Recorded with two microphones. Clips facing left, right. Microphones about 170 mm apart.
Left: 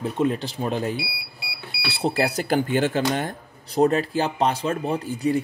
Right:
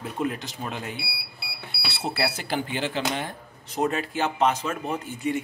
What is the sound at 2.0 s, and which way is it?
Speech, 35° left (ahead or behind).